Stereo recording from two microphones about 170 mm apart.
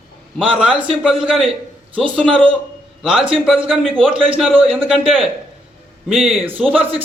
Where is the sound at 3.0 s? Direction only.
Centre (ahead or behind).